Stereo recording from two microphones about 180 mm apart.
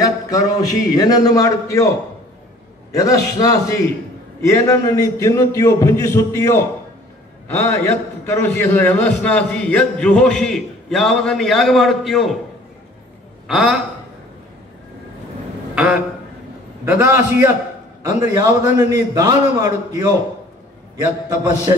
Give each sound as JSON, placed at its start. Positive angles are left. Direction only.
{"t": 0.9, "sound": "a man's voice", "side_deg": 20}
{"t": 2.9, "sound": "a man's voice", "side_deg": 20}
{"t": 13.5, "sound": "a man's voice", "side_deg": 0}
{"t": 15.7, "sound": "a man's voice", "side_deg": -5}